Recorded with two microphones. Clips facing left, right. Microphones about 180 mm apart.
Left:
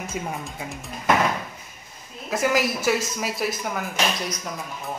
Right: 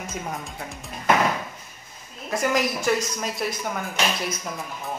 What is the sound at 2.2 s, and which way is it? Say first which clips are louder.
A woman's voice: left 1 dB; centre (ahead or behind).